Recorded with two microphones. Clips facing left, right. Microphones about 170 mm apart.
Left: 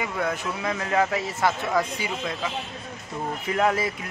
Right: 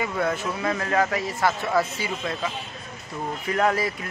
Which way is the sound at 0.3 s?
10° left (ahead or behind).